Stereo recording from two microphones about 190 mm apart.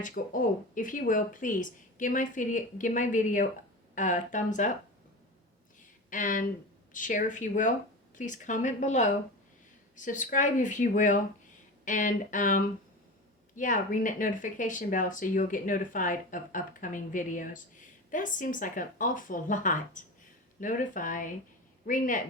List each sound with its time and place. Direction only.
0.0 s speech: 45° left (ahead or behind)
6.1 s speech: 45° left (ahead or behind)